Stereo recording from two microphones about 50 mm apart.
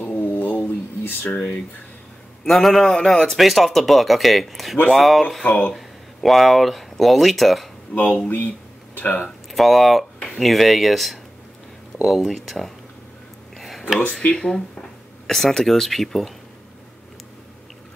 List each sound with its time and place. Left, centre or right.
0.0 s a sound: left
2.4 s a man's voice: centre
8.3 s speech: left
9.5 s a man's voice: centre
13.6 s a sound: centre
14.2 s a man's voice: centre